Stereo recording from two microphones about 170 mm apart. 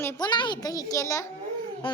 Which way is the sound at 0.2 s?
25° left (ahead or behind).